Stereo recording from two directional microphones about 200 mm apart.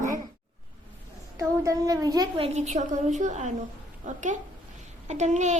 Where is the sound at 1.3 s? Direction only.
20° right (ahead or behind).